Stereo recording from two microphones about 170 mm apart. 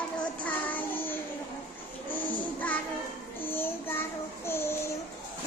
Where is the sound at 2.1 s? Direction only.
10° left (ahead or behind).